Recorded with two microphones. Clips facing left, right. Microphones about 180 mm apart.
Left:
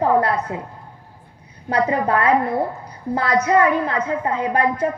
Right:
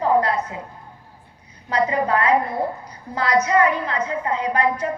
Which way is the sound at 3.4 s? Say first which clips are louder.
Left 2 dB; 55° left (ahead or behind).